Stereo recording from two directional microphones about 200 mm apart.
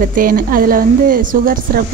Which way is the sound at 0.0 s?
45° right (ahead or behind).